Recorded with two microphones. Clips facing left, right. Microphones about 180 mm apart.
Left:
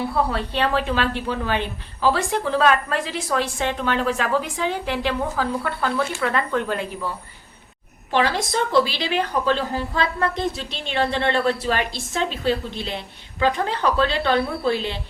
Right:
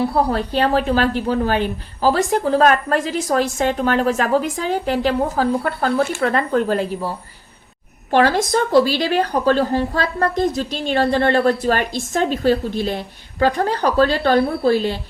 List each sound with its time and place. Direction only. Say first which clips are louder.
0.0 s a woman's voice: right 5 dB; 40° right (ahead or behind)